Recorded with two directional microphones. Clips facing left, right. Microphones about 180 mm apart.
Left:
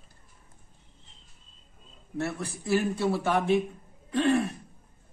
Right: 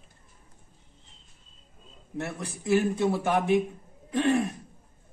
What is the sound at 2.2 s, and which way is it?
A man's voice, 20° right (ahead or behind).